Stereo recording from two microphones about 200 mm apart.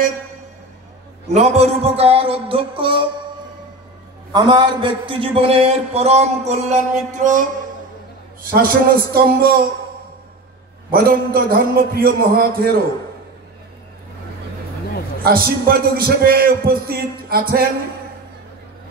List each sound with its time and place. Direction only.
1.3 s a man's voice: 35° right (ahead or behind)
4.3 s a man's voice: 20° right (ahead or behind); by 9.7 s 50° right (ahead or behind)
10.9 s a man's voice: 45° right (ahead or behind)
15.2 s a man's voice: 50° right (ahead or behind)